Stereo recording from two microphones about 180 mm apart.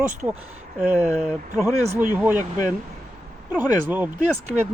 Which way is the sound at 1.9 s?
45° right (ahead or behind).